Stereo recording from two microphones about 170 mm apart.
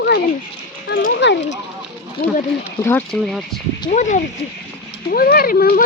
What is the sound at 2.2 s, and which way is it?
Speech, 60° left (ahead or behind).